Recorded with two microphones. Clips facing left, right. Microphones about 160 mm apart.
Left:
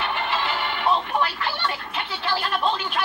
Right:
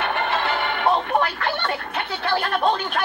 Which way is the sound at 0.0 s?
55° right (ahead or behind).